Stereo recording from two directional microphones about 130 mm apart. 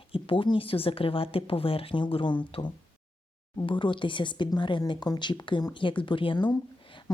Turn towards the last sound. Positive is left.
turn(degrees=40)  # may be behind; listen again after turning